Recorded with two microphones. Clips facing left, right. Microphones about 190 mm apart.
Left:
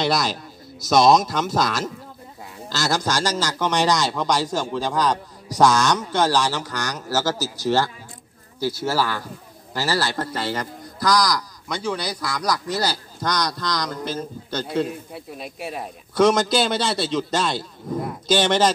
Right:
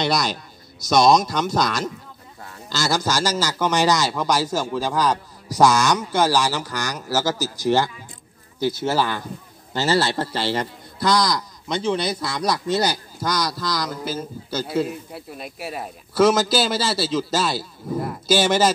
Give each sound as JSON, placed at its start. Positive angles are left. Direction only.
{"t": 0.0, "sound": "a man's voice", "side_deg": 0}
{"t": 13.2, "sound": "a man's voice", "side_deg": -5}